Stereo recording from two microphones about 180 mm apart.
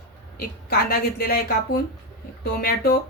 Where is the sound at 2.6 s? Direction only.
55° left (ahead or behind).